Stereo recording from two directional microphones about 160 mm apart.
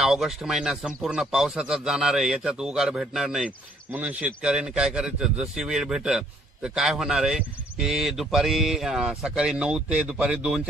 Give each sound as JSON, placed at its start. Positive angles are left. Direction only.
{"t": 0.0, "sound": "a man's voice", "side_deg": 0}